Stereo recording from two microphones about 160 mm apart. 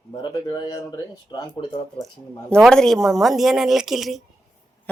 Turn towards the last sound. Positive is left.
turn(degrees=0)  # may be behind; listen again after turning